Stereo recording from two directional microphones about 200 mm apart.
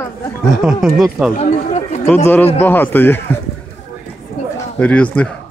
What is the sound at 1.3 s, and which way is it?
Chatter, 35° left (ahead or behind).